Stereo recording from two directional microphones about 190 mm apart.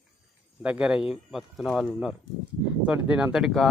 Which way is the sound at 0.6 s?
5° right (ahead or behind).